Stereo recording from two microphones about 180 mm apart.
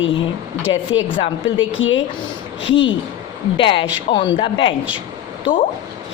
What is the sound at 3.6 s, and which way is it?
A woman's voice, 30° left (ahead or behind).